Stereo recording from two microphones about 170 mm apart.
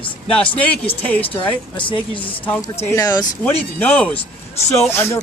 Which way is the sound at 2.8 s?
20° left (ahead or behind).